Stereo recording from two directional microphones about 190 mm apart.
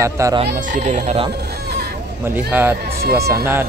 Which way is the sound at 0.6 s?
40° right (ahead or behind).